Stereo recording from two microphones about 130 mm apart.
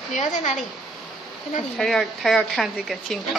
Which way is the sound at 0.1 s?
70° left (ahead or behind).